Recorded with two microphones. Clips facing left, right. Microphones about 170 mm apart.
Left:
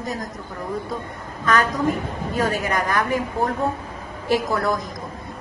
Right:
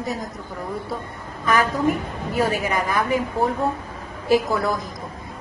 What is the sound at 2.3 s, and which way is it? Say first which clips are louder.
Speech: right 1 dB; 10° right (ahead or behind).